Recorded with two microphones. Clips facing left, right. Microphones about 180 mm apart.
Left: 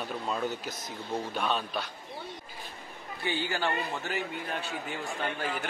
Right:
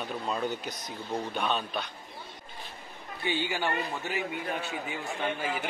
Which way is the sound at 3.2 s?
15° right (ahead or behind).